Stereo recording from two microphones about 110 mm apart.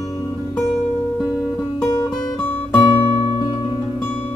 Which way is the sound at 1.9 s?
30° left (ahead or behind).